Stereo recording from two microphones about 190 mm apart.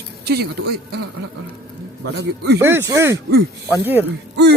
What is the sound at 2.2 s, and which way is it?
Speech, 60° right (ahead or behind).